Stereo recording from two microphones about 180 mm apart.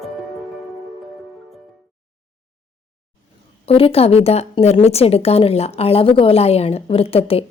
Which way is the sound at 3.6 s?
30° left (ahead or behind).